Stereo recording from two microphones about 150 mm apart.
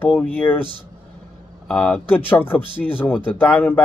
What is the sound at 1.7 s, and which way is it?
Speech, 5° left (ahead or behind).